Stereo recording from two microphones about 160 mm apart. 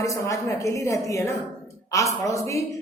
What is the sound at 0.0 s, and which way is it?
A woman's voice, 20° left (ahead or behind).